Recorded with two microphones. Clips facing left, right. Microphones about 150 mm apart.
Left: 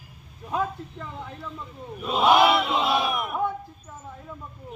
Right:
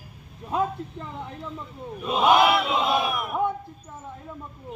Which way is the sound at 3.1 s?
Centre (ahead or behind).